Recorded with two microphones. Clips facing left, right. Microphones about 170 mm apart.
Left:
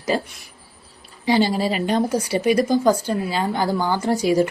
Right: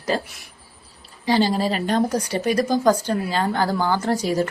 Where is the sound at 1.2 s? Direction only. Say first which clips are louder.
Left 1 dB; 10° left (ahead or behind).